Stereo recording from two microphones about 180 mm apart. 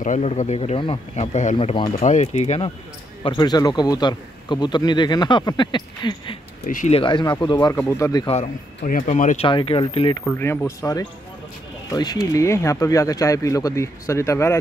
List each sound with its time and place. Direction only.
0.0 s speech: 40° left (ahead or behind)
3.3 s a man's voice: 25° left (ahead or behind)
6.6 s speech: 45° left (ahead or behind)
7.0 s a man's voice: 25° left (ahead or behind)
8.3 s speech: 45° left (ahead or behind)
9.5 s a man's voice: 30° left (ahead or behind)
10.2 s speech: 10° left (ahead or behind)